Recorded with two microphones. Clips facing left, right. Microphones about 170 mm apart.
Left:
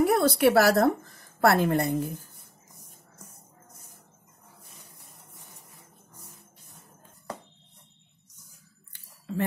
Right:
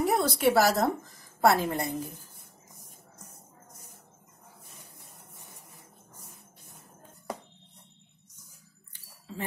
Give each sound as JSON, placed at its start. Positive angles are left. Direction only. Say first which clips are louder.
{"t": 0.0, "sound": "a woman's voice", "louder": "left 4 dB", "side_deg": 60}